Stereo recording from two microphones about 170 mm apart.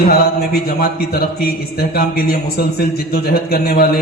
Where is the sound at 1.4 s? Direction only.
65° left (ahead or behind).